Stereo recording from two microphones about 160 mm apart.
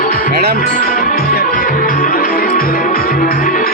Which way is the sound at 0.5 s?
60° left (ahead or behind).